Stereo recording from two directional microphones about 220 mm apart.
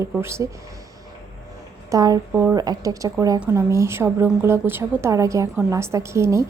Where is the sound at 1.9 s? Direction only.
15° right (ahead or behind).